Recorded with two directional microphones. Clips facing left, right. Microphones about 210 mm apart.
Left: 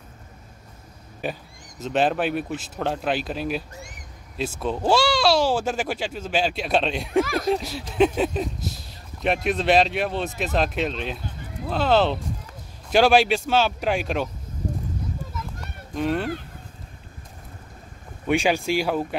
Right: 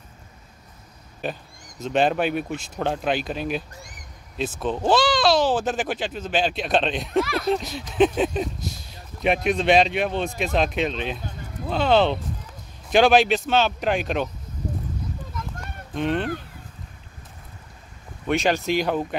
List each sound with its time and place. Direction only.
1.2 s speech: 10° left (ahead or behind)
7.2 s speech: 45° left (ahead or behind)
7.5 s speech: 5° left (ahead or behind)
15.9 s speech: 5° left (ahead or behind)
18.2 s speech: 10° left (ahead or behind)